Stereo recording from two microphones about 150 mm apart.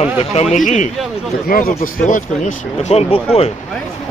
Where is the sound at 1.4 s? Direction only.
70° left (ahead or behind).